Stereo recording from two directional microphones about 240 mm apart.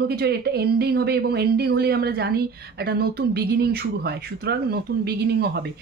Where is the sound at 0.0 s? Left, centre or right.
Right.